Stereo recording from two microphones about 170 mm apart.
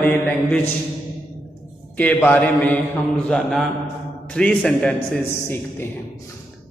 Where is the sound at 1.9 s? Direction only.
10° left (ahead or behind).